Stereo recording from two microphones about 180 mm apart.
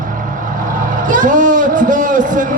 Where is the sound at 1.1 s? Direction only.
45° right (ahead or behind).